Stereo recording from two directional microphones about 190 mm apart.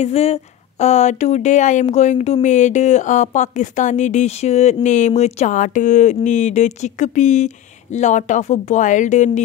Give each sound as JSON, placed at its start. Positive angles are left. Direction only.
{"t": 0.0, "sound": "speech", "side_deg": 35}